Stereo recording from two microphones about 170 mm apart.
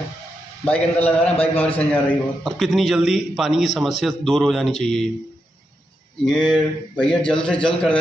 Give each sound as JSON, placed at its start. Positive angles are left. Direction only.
{"t": 0.7, "sound": "a man's voice", "side_deg": 10}
{"t": 1.3, "sound": "a man's voice", "side_deg": 35}
{"t": 1.6, "sound": "a man's voice", "side_deg": 10}
{"t": 6.5, "sound": "a man's voice", "side_deg": 5}